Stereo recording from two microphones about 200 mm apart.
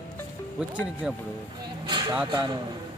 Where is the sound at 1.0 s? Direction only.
5° right (ahead or behind).